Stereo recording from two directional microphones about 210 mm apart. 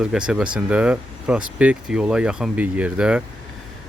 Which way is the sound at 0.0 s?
5° right (ahead or behind).